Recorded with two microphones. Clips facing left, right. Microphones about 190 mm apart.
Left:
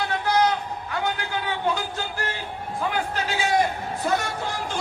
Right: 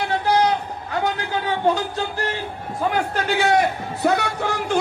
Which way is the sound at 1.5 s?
40° right (ahead or behind).